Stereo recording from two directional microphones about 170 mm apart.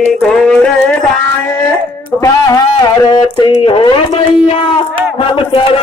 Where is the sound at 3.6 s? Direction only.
30° left (ahead or behind).